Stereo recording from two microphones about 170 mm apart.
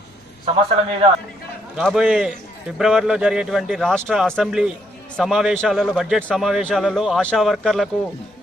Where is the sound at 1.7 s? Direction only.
5° right (ahead or behind).